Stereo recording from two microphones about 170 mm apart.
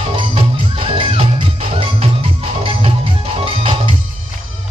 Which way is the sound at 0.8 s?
35° right (ahead or behind).